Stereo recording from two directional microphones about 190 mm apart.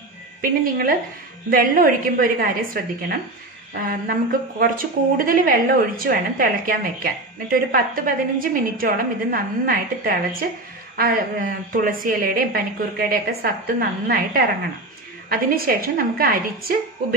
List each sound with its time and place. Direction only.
0.4 s speech: 50° right (ahead or behind)